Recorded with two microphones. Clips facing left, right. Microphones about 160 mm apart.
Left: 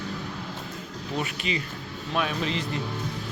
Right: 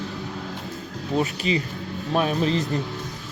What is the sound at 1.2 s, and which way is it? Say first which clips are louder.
Speech: right 7 dB; 35° right (ahead or behind).